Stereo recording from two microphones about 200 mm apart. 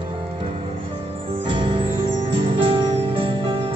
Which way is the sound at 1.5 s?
25° right (ahead or behind).